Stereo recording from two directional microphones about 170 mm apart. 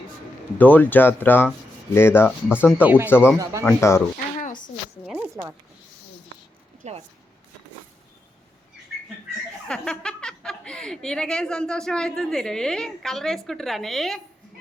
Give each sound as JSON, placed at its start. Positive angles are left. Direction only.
{"t": 0.6, "sound": "speech", "side_deg": 10}
{"t": 2.8, "sound": "speech", "side_deg": -10}
{"t": 3.6, "sound": "speech", "side_deg": 15}
{"t": 5.0, "sound": "a sound", "side_deg": -5}
{"t": 6.8, "sound": "speech", "side_deg": -40}
{"t": 9.6, "sound": "a woman's voice", "side_deg": 5}